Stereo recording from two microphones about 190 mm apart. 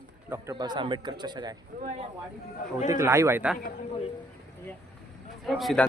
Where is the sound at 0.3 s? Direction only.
20° right (ahead or behind).